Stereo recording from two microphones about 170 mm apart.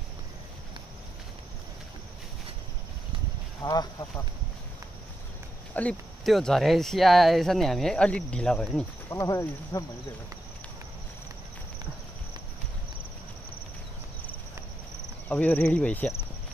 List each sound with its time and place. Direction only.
3.6 s speech: 20° left (ahead or behind)
5.8 s speech: 5° left (ahead or behind)
9.1 s speech: 15° left (ahead or behind)
15.2 s speech: 10° left (ahead or behind)